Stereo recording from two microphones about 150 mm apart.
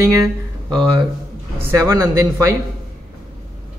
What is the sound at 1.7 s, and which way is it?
Speech, 20° right (ahead or behind).